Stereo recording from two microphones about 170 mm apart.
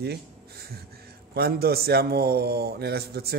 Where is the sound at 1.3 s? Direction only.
65° right (ahead or behind).